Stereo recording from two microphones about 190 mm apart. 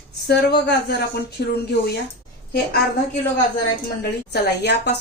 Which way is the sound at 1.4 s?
60° left (ahead or behind).